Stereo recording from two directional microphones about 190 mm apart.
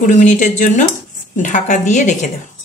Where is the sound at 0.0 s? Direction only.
40° left (ahead or behind).